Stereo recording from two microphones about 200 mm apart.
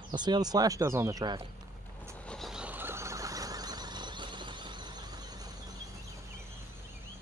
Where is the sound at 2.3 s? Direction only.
Centre (ahead or behind); by 5.4 s 20° right (ahead or behind).